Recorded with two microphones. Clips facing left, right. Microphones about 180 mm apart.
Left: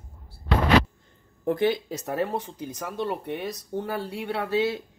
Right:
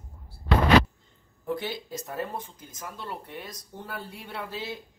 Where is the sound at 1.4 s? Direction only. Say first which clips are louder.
Left 8 dB; 55° left (ahead or behind).